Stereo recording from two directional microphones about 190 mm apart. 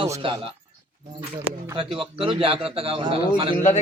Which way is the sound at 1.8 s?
30° right (ahead or behind).